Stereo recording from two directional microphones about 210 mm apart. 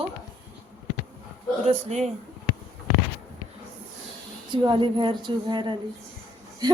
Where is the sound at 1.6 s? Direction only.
30° right (ahead or behind).